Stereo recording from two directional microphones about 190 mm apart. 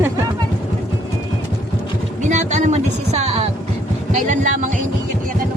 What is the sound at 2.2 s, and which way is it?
Speech, 40° right (ahead or behind).